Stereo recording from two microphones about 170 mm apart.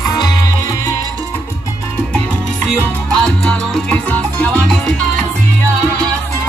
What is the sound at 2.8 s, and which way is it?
Salsa music, 5° left (ahead or behind).